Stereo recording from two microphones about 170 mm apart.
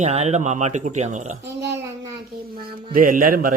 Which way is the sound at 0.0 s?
40° right (ahead or behind).